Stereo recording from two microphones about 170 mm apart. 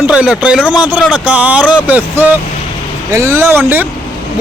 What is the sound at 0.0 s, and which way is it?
Speech, 5° right (ahead or behind).